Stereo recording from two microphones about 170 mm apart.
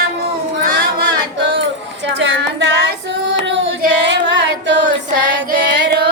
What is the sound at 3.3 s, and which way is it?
Carnatic music, 90° right.